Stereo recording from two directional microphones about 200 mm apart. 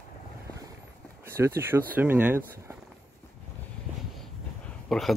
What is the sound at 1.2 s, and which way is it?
Speech, 10° right (ahead or behind).